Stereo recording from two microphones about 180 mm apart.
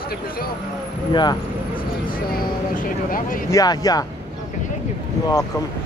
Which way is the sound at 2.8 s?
50° left (ahead or behind).